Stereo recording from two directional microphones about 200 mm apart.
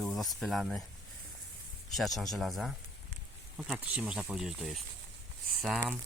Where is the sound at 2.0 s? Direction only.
Centre (ahead or behind).